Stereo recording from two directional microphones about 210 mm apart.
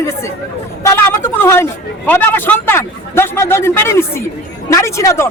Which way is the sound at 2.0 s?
10° left (ahead or behind).